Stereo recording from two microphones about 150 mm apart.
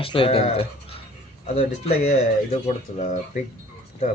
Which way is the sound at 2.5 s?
50° left (ahead or behind).